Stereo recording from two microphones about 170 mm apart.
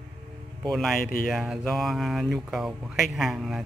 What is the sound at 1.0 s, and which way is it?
Speech, 55° left (ahead or behind).